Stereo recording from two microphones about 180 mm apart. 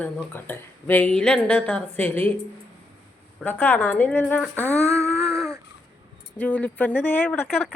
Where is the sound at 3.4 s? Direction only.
10° left (ahead or behind).